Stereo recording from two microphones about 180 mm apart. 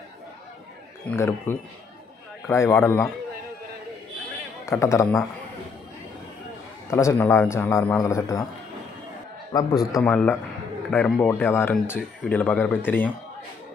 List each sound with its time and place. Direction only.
1.0 s speech: 15° left (ahead or behind)
4.6 s speech: 15° left (ahead or behind)
6.9 s a man's voice: 15° left (ahead or behind)
9.5 s a man's voice: 20° left (ahead or behind)
10.1 s speech: 5° left (ahead or behind)